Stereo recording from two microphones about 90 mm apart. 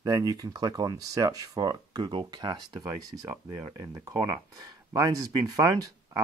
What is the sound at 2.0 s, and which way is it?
Speech, 60° right (ahead or behind).